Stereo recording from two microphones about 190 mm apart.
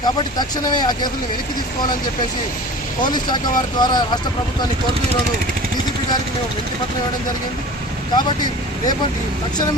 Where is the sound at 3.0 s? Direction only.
20° left (ahead or behind).